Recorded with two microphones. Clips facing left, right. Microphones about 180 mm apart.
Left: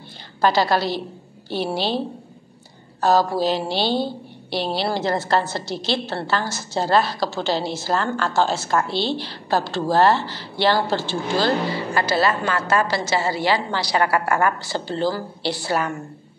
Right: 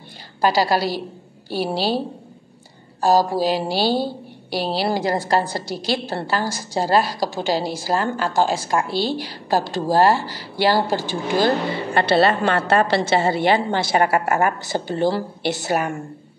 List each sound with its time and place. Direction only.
0.4 s a woman's voice: 10° right (ahead or behind)
3.0 s a woman's voice: 10° right (ahead or behind)
12.2 s a woman's voice: 30° right (ahead or behind)
12.6 s a woman's voice: 60° right (ahead or behind)
13.1 s a woman's voice: 25° right (ahead or behind)